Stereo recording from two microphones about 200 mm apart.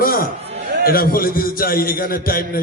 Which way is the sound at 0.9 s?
45° left (ahead or behind).